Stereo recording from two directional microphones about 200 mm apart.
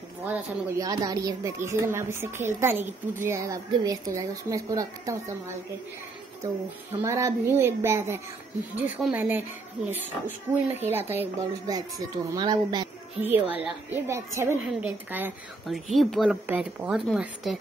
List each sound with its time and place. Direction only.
0.3 s speech: 15° right (ahead or behind)
6.9 s a woman's voice: 15° right (ahead or behind)
13.2 s speech: 10° right (ahead or behind)